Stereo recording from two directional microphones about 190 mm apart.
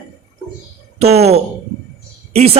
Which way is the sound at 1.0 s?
35° right (ahead or behind).